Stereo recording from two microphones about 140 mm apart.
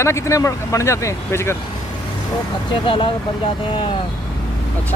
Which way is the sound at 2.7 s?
35° left (ahead or behind).